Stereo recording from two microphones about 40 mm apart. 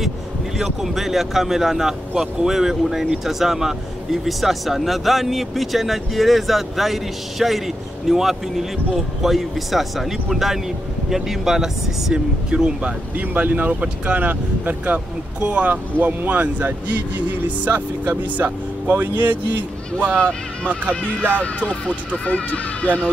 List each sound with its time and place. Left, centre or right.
0.6 s speech: centre; by 12.9 s right
13.3 s speech: right
22.2 s speech: left